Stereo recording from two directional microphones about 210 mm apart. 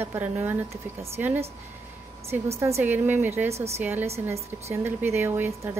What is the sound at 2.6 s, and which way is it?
A woman's voice, 15° right (ahead or behind).